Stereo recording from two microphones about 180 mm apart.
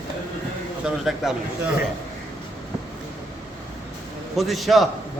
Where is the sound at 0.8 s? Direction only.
5° right (ahead or behind).